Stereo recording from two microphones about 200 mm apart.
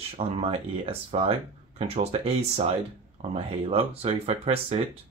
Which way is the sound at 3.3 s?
30° right (ahead or behind).